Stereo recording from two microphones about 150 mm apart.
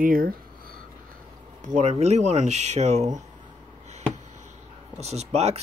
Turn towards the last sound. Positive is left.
turn(degrees=-45)  # may be behind; listen again after turning